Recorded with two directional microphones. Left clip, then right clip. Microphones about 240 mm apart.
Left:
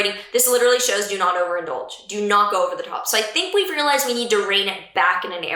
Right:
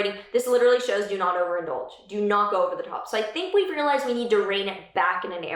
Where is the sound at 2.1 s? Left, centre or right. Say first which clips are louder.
Left 4 dB; centre.